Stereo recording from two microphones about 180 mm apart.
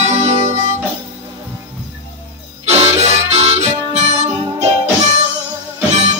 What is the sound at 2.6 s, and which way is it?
Harmonica, 35° right (ahead or behind).